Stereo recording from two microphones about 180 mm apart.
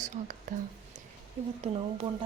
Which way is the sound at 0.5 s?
45° right (ahead or behind).